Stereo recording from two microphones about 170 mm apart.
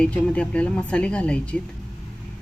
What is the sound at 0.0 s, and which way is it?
Speech, 5° left (ahead or behind).